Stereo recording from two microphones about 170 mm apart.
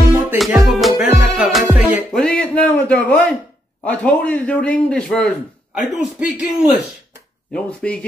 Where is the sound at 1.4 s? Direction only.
5° right (ahead or behind).